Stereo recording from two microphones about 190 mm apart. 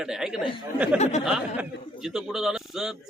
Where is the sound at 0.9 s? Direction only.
35° left (ahead or behind).